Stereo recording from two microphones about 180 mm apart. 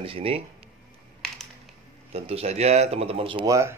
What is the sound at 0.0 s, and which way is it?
Speech, 30° right (ahead or behind).